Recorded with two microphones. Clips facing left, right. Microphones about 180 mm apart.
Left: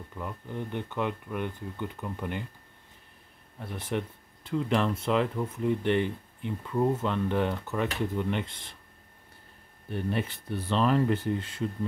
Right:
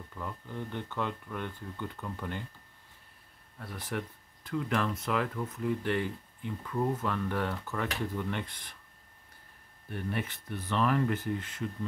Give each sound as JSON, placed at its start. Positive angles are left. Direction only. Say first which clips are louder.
{"t": 0.1, "sound": "speech", "louder": "left 3 dB", "side_deg": 20}
{"t": 3.5, "sound": "speech", "louder": "left 5 dB", "side_deg": 25}
{"t": 9.8, "sound": "speech", "louder": "left 5 dB", "side_deg": 25}